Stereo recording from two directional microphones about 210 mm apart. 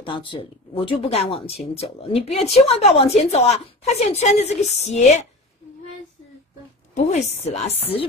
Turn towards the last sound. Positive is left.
turn(degrees=30)  # may be behind; listen again after turning